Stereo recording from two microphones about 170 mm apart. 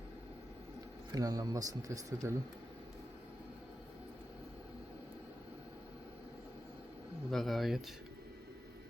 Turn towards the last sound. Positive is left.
turn(degrees=0)  # may be behind; listen again after turning